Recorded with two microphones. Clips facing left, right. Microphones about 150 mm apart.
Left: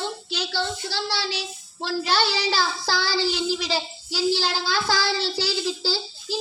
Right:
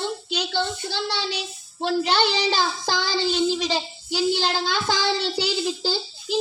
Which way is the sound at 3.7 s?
20° right (ahead or behind).